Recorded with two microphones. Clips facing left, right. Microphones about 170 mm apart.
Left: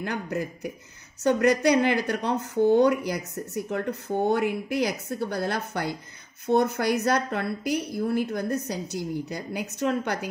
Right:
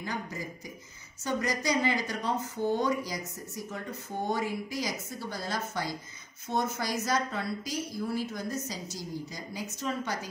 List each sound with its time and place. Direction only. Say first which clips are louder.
0.0 s speech: left 7 dB; 65° left (ahead or behind)